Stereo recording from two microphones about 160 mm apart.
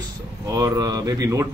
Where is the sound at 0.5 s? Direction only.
20° right (ahead or behind).